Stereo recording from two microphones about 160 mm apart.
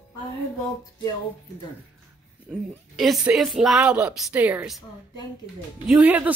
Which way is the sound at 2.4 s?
Centre (ahead or behind).